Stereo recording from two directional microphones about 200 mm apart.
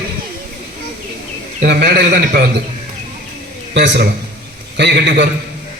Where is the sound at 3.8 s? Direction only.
55° right (ahead or behind).